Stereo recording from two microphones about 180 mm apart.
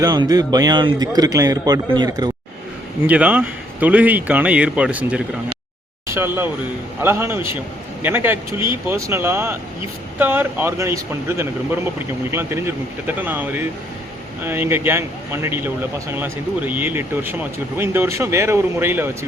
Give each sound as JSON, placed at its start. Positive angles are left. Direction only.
{"t": 0.0, "sound": "a man's voice", "side_deg": -20}
{"t": 3.0, "sound": "speech", "side_deg": -10}